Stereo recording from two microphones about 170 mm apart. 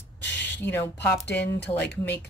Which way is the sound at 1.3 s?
85° left.